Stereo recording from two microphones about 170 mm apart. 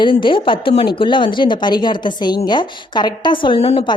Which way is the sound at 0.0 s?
30° left (ahead or behind).